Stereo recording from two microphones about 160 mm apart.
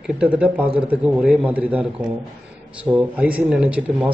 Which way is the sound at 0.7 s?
10° right (ahead or behind).